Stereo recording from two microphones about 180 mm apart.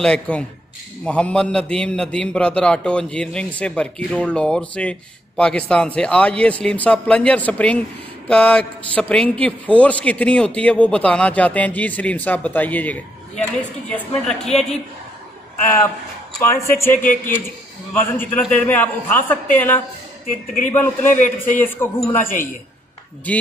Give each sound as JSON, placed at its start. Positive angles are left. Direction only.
{"t": 0.0, "sound": "a man's voice", "side_deg": 5}
{"t": 16.3, "sound": "a man's voice", "side_deg": 15}
{"t": 16.9, "sound": "a man's voice", "side_deg": 50}
{"t": 17.9, "sound": "a man's voice", "side_deg": 10}
{"t": 21.0, "sound": "a man's voice", "side_deg": 45}
{"t": 21.5, "sound": "a man's voice", "side_deg": 15}